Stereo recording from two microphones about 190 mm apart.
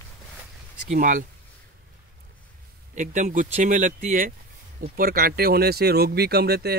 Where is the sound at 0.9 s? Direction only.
45° right (ahead or behind).